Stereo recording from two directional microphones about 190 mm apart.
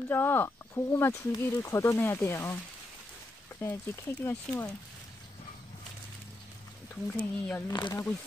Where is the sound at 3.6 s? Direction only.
15° left (ahead or behind).